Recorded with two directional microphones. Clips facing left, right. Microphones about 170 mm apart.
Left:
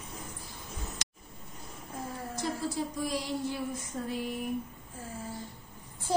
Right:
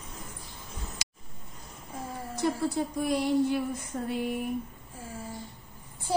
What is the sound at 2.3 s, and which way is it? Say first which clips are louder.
Speech: right 6 dB; 60° right (ahead or behind).